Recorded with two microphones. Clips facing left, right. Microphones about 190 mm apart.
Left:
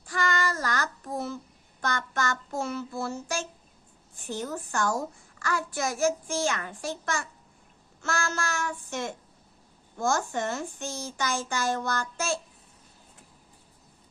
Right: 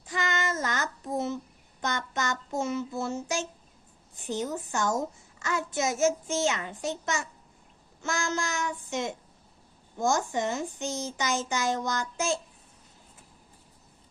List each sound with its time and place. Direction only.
0.0 s child singing: 20° right (ahead or behind)
4.2 s a child's voice: 20° right (ahead or behind)